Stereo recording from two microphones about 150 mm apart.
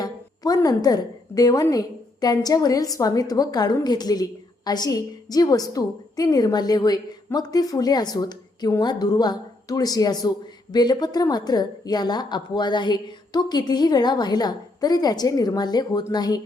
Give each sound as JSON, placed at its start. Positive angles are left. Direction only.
{"t": 0.0, "sound": "a woman's voice", "side_deg": 25}